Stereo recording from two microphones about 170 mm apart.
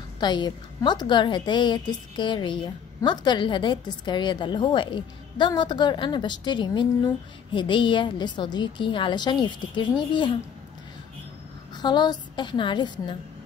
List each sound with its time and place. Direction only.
0.2 s a woman's voice: 25° left (ahead or behind)
11.7 s a woman's voice: 25° left (ahead or behind)